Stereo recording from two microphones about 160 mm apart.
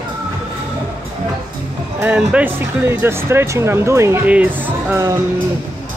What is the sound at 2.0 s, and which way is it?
Speech, 10° right (ahead or behind).